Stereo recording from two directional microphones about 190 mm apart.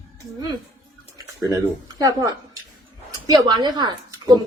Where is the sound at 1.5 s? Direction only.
20° right (ahead or behind).